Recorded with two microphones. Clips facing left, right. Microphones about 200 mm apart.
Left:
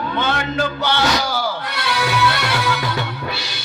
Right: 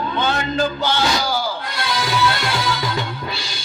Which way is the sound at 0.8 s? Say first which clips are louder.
Left 1 dB; 65° left (ahead or behind).